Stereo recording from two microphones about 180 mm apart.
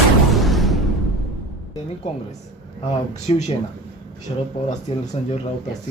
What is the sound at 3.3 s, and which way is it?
Speech, 35° left (ahead or behind).